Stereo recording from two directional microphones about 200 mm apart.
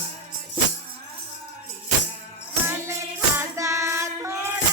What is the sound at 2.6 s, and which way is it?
Music, 15° right (ahead or behind).